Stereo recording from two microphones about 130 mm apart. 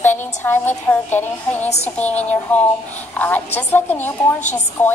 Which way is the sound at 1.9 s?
10° left (ahead or behind).